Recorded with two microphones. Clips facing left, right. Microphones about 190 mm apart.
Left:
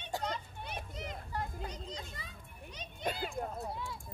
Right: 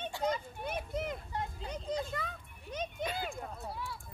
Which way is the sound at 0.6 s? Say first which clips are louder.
Right 11 dB; 55° right (ahead or behind).